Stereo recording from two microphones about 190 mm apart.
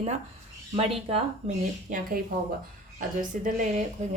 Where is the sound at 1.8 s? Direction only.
45° right (ahead or behind).